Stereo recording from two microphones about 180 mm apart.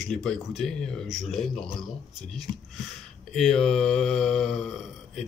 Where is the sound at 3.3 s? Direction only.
Centre (ahead or behind).